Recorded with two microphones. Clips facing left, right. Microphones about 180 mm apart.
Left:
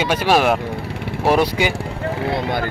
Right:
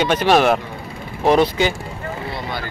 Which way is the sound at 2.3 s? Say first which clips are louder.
Left 9 dB; 55° left (ahead or behind).